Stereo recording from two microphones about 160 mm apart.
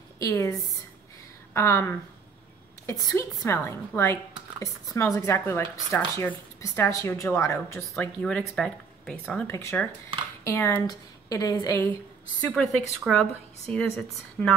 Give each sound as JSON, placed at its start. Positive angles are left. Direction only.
{"t": 0.2, "sound": "a woman's voice", "side_deg": 20}
{"t": 7.8, "sound": "a woman's voice", "side_deg": 5}
{"t": 9.5, "sound": "a woman's voice", "side_deg": 15}
{"t": 12.4, "sound": "a woman's voice", "side_deg": 5}